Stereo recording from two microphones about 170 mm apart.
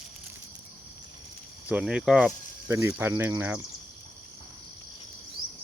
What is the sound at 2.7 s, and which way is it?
Speech, 15° right (ahead or behind).